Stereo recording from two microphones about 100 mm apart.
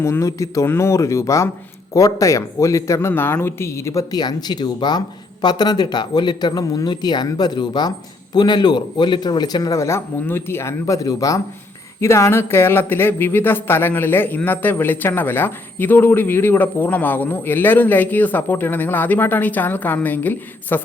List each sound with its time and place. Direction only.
0.0 s speech: 30° left (ahead or behind)
3.1 s speech: 20° left (ahead or behind)
4.1 s speech: 40° left (ahead or behind); by 20.8 s 20° left (ahead or behind)